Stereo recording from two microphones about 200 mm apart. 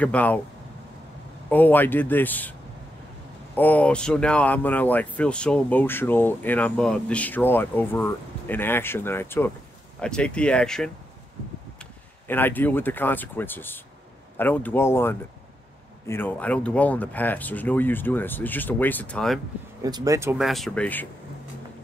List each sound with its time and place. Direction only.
0.0 s speech: 5° left (ahead or behind)
1.5 s speech: 10° left (ahead or behind)
3.5 s speech: 10° left (ahead or behind)
12.3 s speech: 10° left (ahead or behind)
19.8 s speech: 20° right (ahead or behind)
20.3 s speech: centre (ahead or behind)